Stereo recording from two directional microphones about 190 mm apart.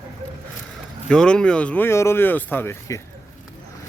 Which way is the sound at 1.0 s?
5° left (ahead or behind).